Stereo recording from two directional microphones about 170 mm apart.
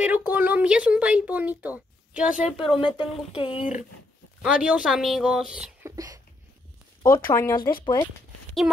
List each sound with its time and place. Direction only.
0.0 s speech: 10° right (ahead or behind)
2.8 s speech: 25° left (ahead or behind)
4.4 s speech: 5° right (ahead or behind)
5.9 s a sound: 20° right (ahead or behind)
7.0 s speech: 20° left (ahead or behind)